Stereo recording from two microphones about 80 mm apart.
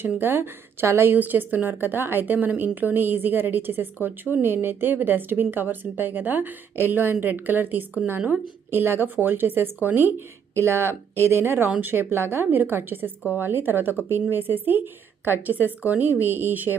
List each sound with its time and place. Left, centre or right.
0.2 s speech: right